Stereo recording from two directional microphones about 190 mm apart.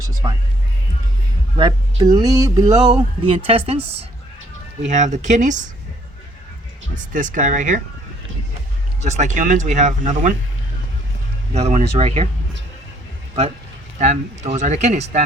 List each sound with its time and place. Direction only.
0.2 s speech: 20° right (ahead or behind)
1.5 s speech: 20° right (ahead or behind); by 5.6 s 40° right (ahead or behind)
6.9 s speech: 45° right (ahead or behind)
9.0 s speech: 35° right (ahead or behind)
11.5 s speech: 35° right (ahead or behind)
14.0 s speech: 35° right (ahead or behind)